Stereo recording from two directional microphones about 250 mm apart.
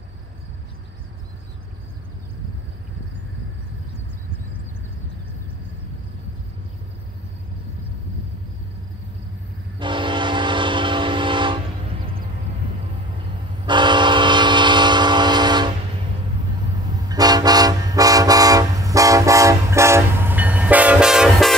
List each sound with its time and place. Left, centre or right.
9.8 s train: centre
13.7 s train: centre
17.1 s toot: centre